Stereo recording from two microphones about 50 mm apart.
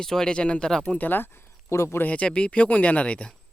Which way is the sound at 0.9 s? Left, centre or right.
Left.